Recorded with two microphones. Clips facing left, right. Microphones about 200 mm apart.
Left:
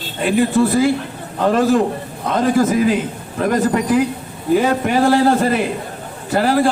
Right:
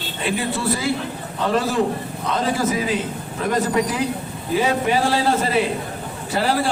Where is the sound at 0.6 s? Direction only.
45° left (ahead or behind).